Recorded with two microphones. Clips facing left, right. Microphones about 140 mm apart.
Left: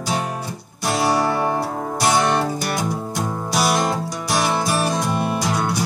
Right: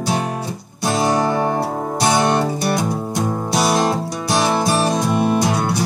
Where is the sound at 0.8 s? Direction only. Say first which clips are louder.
Right 2 dB; 25° right (ahead or behind).